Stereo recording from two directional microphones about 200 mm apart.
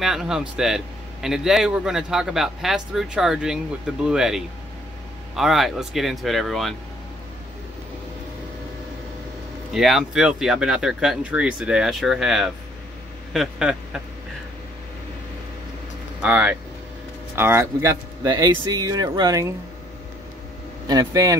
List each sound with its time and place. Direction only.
0.0 s a man's voice: centre (ahead or behind)
9.8 s a man's voice: centre (ahead or behind)
16.2 s speech: 5° right (ahead or behind)
20.8 s speech: 20° right (ahead or behind)